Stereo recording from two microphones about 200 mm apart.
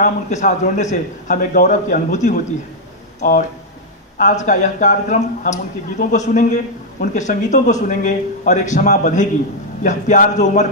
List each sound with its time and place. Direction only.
0.0 s a man's voice: 35° left (ahead or behind)